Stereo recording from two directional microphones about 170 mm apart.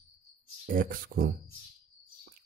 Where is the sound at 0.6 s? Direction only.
55° right (ahead or behind).